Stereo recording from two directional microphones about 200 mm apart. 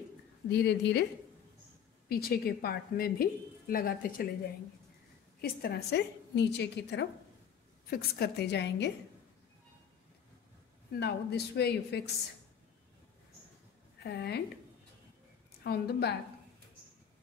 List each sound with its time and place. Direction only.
0.5 s a woman's voice: 55° left (ahead or behind)
2.0 s a woman's voice: 50° left (ahead or behind)
5.4 s a woman's voice: 55° left (ahead or behind)
10.9 s a woman's voice: 55° left (ahead or behind)
14.0 s a woman's voice: 55° left (ahead or behind)
15.6 s a woman's voice: 55° left (ahead or behind)